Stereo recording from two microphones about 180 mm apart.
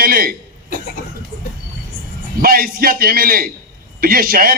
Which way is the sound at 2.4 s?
55° right (ahead or behind).